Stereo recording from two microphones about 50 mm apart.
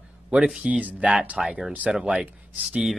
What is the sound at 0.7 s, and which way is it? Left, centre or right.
Speech, right.